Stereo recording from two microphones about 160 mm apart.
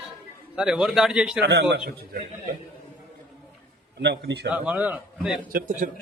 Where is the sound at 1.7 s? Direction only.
70° right (ahead or behind).